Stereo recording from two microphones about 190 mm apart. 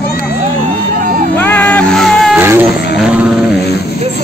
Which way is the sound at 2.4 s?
10° right (ahead or behind).